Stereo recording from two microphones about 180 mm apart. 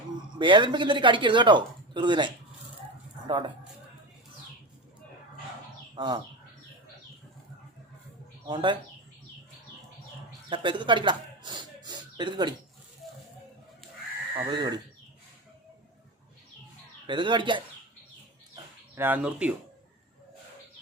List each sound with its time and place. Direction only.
0.3 s speech: 25° right (ahead or behind)
5.9 s speech: 25° right (ahead or behind)
8.4 s speech: 25° right (ahead or behind)
10.5 s speech: 25° right (ahead or behind)
14.5 s speech: 25° right (ahead or behind)
17.1 s speech: 25° right (ahead or behind)
18.5 s bird: 10° right (ahead or behind)